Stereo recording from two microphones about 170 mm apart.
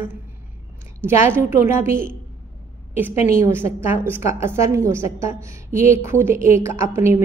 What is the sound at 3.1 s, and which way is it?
Speech, 40° left (ahead or behind).